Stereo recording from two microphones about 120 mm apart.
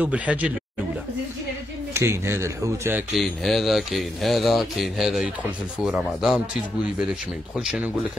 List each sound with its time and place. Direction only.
0.0 s speech: 10° right (ahead or behind)
2.0 s speech: 20° right (ahead or behind)
3.1 s speech: centre (ahead or behind)